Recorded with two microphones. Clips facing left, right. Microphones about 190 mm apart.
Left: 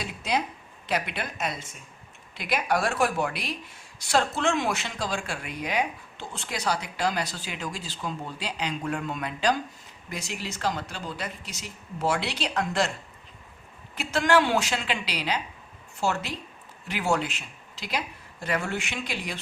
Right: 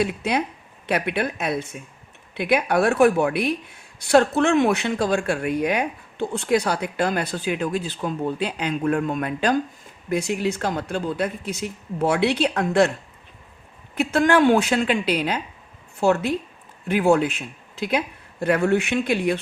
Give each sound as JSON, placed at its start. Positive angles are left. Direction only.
{"t": 0.0, "sound": "speech", "side_deg": -60}
{"t": 13.9, "sound": "a woman's voice", "side_deg": -55}